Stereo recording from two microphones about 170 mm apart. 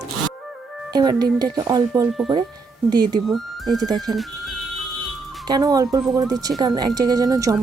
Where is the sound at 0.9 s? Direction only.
25° right (ahead or behind).